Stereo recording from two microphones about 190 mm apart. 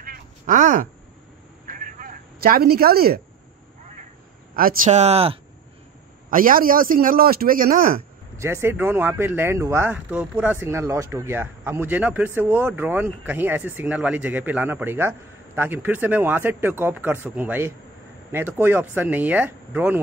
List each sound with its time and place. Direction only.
0.0 s a sound: 45° right (ahead or behind)
1.7 s telephone: 45° right (ahead or behind)
4.6 s speech: 45° right (ahead or behind)
6.3 s a man's voice: 50° right (ahead or behind)
8.4 s speech: 15° right (ahead or behind)